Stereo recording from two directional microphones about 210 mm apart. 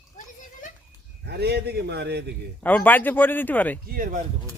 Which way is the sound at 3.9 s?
40° right (ahead or behind).